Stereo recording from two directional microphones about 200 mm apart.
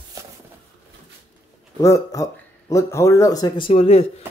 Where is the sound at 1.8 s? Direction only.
15° left (ahead or behind).